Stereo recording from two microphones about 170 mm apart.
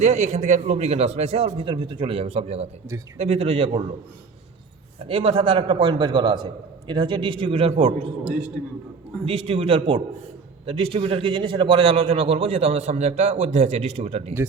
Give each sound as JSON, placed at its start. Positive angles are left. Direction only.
{"t": 0.0, "sound": "a man's voice", "side_deg": -45}
{"t": 5.0, "sound": "a man's voice", "side_deg": -35}
{"t": 9.2, "sound": "a man's voice", "side_deg": -35}